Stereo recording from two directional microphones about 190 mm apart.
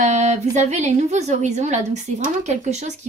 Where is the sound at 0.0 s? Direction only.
40° right (ahead or behind).